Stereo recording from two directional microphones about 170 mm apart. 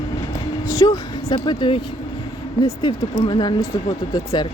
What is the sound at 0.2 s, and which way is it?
Train, 20° left (ahead or behind).